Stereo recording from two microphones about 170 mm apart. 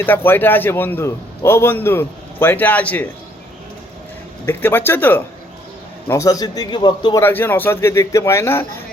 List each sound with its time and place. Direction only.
0.0 s a man's voice: 10° left (ahead or behind)
4.4 s a man's voice: 10° left (ahead or behind)
7.2 s a man's voice: 15° left (ahead or behind)